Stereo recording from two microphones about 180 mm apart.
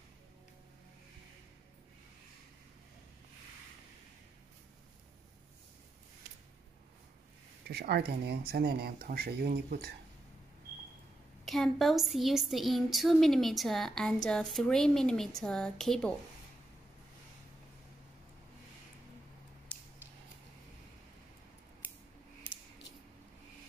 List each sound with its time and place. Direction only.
7.6 s speech: 60° right (ahead or behind)
11.4 s speech: centre (ahead or behind)